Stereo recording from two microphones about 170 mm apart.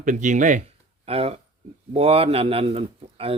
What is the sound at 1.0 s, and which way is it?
A man's voice, 35° right (ahead or behind).